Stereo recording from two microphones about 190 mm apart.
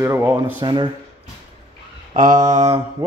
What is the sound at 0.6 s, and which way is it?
Speech, 25° right (ahead or behind).